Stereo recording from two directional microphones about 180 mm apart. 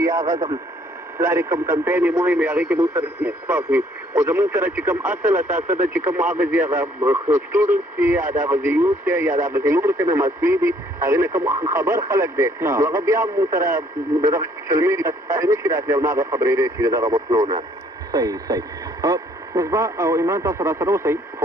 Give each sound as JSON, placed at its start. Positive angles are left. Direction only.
{"t": 0.0, "sound": "speech", "side_deg": -20}